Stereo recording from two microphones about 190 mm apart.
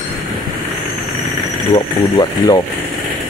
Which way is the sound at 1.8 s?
20° left (ahead or behind).